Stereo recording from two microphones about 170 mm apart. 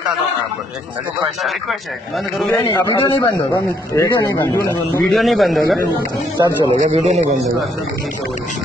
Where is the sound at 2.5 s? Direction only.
20° left (ahead or behind).